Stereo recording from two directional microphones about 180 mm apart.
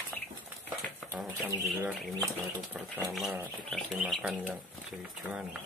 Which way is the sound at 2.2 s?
15° right (ahead or behind).